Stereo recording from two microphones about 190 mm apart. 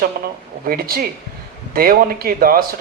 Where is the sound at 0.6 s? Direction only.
50° right (ahead or behind).